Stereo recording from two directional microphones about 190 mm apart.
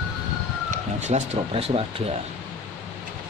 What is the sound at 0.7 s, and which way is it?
Speech, 35° right (ahead or behind).